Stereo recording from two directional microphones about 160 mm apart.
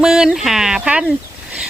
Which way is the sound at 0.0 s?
5° right (ahead or behind).